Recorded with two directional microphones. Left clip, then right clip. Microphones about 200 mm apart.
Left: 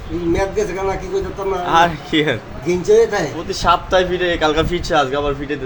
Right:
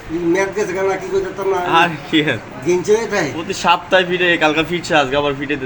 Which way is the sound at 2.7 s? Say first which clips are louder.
Left 2 dB; 40° right (ahead or behind).